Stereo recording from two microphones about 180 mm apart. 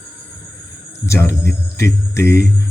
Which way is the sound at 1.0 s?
15° left (ahead or behind).